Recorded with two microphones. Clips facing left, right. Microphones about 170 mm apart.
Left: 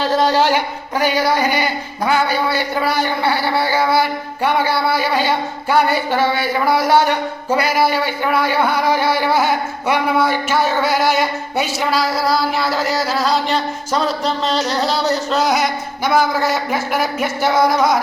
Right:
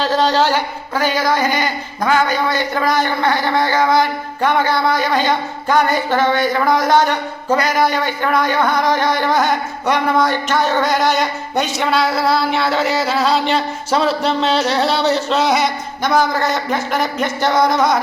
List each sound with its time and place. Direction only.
0.0 s speech: 10° left (ahead or behind)